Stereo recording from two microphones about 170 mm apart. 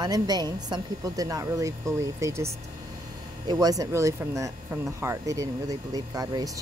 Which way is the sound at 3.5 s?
20° right (ahead or behind).